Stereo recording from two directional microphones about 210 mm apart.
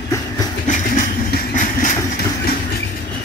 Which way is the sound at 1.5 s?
40° left (ahead or behind).